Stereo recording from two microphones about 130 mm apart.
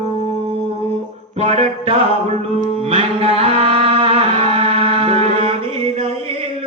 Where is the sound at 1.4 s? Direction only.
55° right (ahead or behind).